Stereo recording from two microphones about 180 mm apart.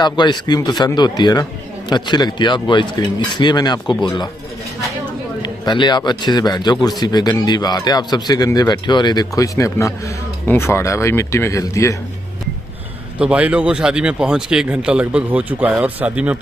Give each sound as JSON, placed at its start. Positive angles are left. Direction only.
{"t": 0.0, "sound": "speech", "side_deg": 25}
{"t": 5.4, "sound": "speech", "side_deg": 25}
{"t": 13.2, "sound": "speech", "side_deg": -5}